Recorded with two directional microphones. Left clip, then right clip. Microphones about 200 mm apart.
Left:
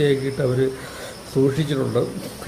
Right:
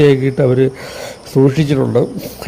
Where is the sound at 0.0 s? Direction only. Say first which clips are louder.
Right 9 dB; 35° right (ahead or behind).